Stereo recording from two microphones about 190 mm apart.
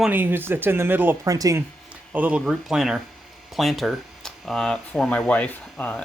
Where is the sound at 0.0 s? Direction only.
10° right (ahead or behind).